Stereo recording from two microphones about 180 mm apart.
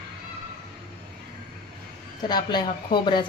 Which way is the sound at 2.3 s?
25° left (ahead or behind).